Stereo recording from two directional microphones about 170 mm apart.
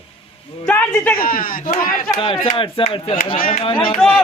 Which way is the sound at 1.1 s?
55° left (ahead or behind).